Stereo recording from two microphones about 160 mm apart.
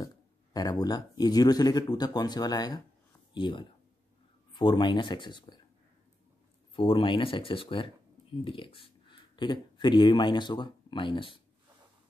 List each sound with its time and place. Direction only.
0.0 s speech: 25° left (ahead or behind)
6.7 s speech: 35° left (ahead or behind)